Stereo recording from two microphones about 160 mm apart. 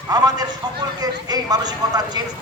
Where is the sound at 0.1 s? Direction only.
25° right (ahead or behind).